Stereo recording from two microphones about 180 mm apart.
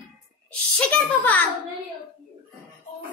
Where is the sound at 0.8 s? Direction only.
5° left (ahead or behind).